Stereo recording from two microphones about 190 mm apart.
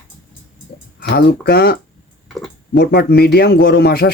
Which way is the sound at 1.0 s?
55° left (ahead or behind).